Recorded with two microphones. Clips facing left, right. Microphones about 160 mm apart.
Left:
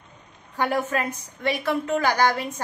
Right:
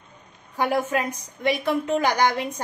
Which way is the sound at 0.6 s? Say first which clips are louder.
Right 1 dB; 10° right (ahead or behind).